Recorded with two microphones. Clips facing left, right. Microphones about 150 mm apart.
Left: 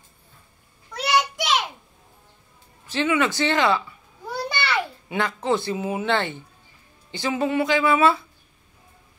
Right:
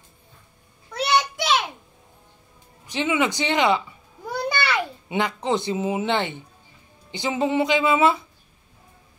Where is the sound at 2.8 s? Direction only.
15° right (ahead or behind).